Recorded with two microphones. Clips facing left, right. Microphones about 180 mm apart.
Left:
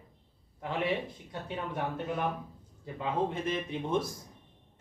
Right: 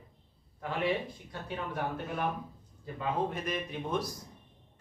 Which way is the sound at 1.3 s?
20° left (ahead or behind).